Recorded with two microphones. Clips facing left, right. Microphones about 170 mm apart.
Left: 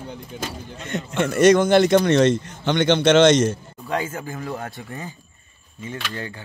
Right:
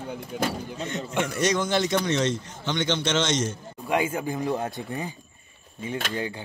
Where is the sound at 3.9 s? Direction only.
15° right (ahead or behind).